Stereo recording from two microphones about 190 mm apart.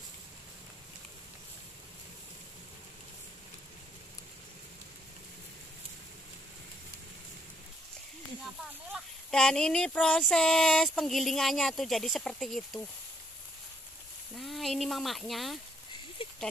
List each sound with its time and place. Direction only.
8.9 s child singing: 5° left (ahead or behind)
14.3 s speech: centre (ahead or behind)
16.2 s a sound: 30° left (ahead or behind)